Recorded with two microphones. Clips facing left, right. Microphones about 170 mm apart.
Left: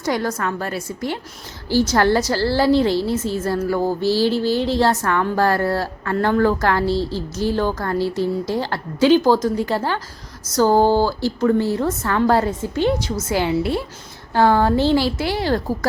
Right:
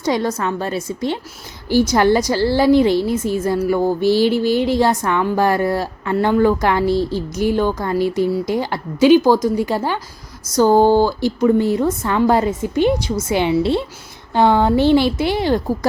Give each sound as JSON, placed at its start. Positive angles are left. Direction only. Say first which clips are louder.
{"t": 0.0, "sound": "a woman's voice", "louder": "right 3 dB", "side_deg": -20}